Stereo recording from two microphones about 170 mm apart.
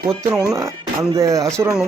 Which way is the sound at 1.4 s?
5° left (ahead or behind).